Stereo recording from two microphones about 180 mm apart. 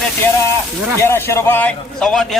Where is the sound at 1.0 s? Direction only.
15° left (ahead or behind).